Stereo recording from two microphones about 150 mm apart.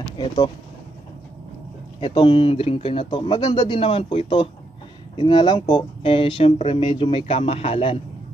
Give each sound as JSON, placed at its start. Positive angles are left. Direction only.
{"t": 2.0, "sound": "speech", "side_deg": 35}